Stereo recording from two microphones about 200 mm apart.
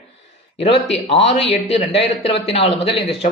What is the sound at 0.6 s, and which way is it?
A man's voice, 30° left (ahead or behind).